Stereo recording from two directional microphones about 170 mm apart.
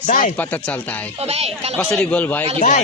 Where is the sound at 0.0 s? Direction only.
50° left (ahead or behind).